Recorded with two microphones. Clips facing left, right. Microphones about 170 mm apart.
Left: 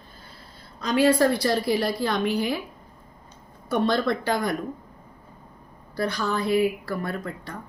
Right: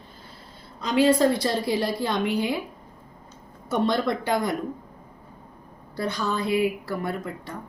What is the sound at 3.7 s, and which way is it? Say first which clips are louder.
Speech: left 1 dB; 15° right (ahead or behind).